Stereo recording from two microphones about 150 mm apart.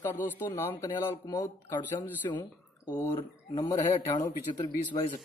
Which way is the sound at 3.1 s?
35° left (ahead or behind).